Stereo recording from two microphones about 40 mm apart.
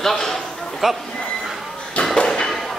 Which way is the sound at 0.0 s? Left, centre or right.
Centre.